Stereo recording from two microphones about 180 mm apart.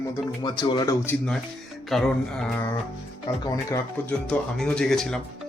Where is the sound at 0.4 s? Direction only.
25° left (ahead or behind).